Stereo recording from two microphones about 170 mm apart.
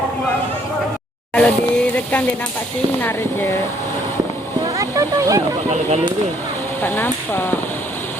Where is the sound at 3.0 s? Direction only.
15° left (ahead or behind).